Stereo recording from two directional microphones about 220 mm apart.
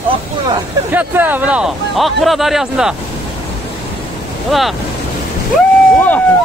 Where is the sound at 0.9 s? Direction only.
10° right (ahead or behind).